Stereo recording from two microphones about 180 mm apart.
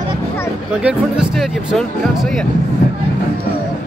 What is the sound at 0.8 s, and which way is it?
Speech, 5° right (ahead or behind).